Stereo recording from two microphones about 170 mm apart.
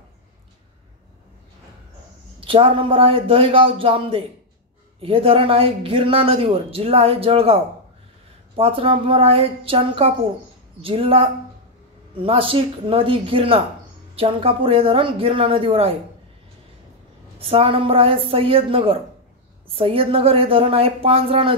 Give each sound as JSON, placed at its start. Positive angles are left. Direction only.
{"t": 2.4, "sound": "speech", "side_deg": -30}
{"t": 17.4, "sound": "speech", "side_deg": -35}